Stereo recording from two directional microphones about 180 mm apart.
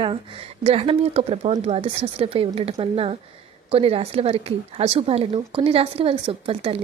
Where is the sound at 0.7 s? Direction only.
30° right (ahead or behind).